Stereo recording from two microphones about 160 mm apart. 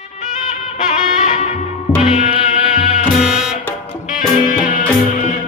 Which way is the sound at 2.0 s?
40° left (ahead or behind).